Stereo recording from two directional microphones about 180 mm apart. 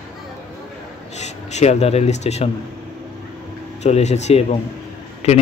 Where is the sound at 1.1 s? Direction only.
40° left (ahead or behind).